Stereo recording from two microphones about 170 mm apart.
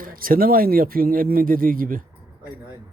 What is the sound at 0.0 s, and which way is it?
Speech, 55° right (ahead or behind).